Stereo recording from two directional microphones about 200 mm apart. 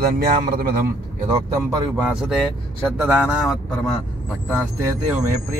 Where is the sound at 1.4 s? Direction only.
15° right (ahead or behind).